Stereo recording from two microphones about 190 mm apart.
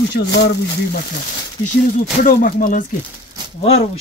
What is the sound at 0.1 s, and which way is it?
Speech, 65° left (ahead or behind).